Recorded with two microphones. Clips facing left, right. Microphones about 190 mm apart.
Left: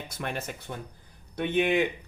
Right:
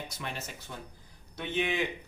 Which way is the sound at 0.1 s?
55° left (ahead or behind).